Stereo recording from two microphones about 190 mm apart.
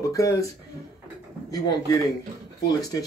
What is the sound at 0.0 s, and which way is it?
Speech, 15° left (ahead or behind).